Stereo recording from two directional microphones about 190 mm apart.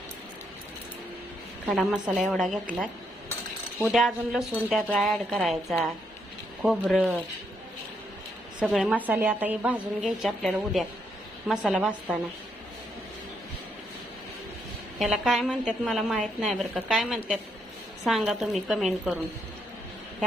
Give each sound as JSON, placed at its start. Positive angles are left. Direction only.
{"t": 1.7, "sound": "a woman's voice", "side_deg": -5}
{"t": 8.6, "sound": "a woman's voice", "side_deg": -5}
{"t": 14.9, "sound": "a woman's voice", "side_deg": 0}